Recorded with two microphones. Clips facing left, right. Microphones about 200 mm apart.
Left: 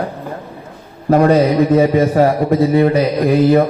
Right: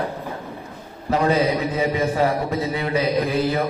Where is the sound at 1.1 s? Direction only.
55° left (ahead or behind).